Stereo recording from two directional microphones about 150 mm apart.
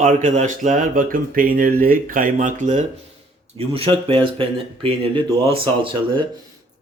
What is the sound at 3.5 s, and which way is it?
Speech, 40° right (ahead or behind).